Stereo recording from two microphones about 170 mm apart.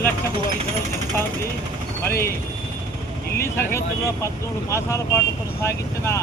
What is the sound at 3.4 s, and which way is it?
Speech, 15° left (ahead or behind).